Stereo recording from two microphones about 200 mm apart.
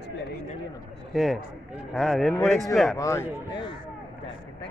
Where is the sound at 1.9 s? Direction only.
Centre (ahead or behind).